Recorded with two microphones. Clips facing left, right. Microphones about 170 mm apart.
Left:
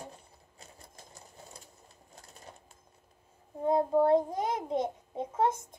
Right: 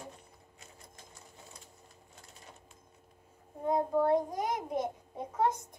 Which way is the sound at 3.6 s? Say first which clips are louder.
Left 3 dB; 25° left (ahead or behind).